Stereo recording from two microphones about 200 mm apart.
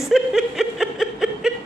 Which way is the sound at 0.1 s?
Centre (ahead or behind).